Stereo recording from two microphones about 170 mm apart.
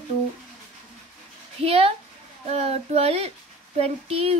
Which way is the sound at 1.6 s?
35° right (ahead or behind).